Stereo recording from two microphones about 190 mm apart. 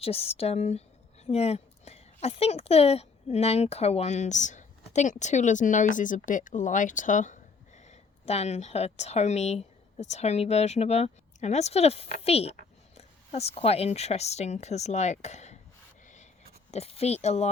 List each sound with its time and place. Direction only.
0.0 s a woman's voice: 30° left (ahead or behind)
16.7 s a woman's voice: 30° left (ahead or behind)